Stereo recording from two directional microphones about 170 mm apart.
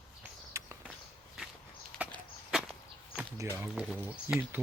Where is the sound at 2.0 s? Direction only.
5° right (ahead or behind).